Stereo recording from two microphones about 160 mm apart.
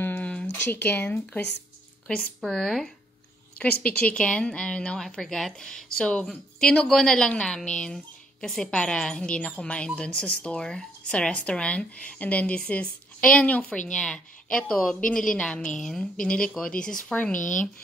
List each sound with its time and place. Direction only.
0.0 s a woman's voice: 10° left (ahead or behind)
17.3 s speech: 55° left (ahead or behind)